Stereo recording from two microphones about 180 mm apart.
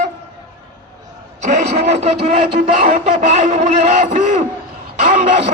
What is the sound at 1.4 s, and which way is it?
A man's voice, 40° right (ahead or behind).